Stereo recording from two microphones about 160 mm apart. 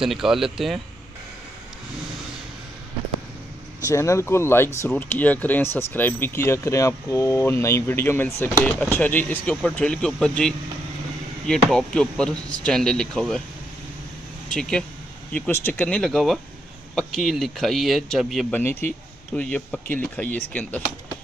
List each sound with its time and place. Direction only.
0.0 s speech: centre (ahead or behind)
3.8 s speech: 20° left (ahead or behind); by 13.4 s 5° left (ahead or behind)
14.5 s speech: 5° left (ahead or behind)
18.6 s speech: 15° left (ahead or behind)